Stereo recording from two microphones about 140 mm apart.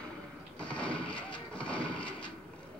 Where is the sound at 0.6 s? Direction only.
10° left (ahead or behind).